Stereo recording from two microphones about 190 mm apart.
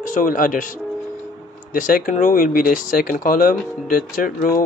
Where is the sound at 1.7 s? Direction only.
45° left (ahead or behind).